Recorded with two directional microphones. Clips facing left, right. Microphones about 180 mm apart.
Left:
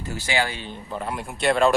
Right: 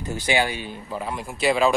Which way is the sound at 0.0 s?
20° right (ahead or behind).